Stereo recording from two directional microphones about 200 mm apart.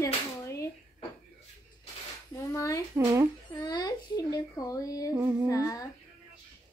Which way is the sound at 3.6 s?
20° left (ahead or behind).